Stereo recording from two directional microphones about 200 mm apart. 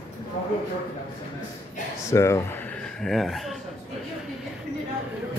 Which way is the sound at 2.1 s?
15° left (ahead or behind).